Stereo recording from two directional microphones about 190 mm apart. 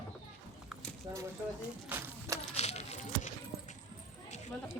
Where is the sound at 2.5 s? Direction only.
35° left (ahead or behind).